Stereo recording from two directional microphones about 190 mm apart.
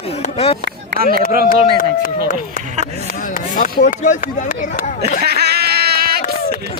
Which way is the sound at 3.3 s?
45° left (ahead or behind).